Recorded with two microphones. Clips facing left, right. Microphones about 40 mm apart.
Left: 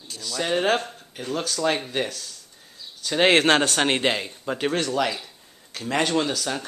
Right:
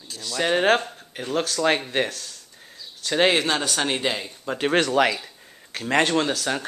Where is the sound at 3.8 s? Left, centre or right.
Left.